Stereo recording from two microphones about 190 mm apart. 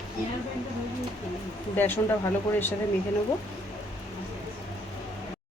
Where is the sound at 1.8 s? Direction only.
10° left (ahead or behind).